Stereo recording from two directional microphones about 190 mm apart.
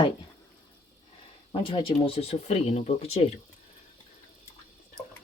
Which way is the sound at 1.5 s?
30° left (ahead or behind).